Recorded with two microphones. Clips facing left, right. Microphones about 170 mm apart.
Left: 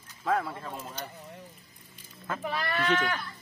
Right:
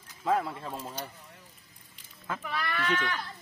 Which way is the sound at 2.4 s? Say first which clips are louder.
Left 3 dB; 40° left (ahead or behind).